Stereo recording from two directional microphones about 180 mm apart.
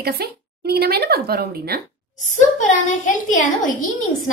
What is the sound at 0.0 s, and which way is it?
Speech, 60° right (ahead or behind).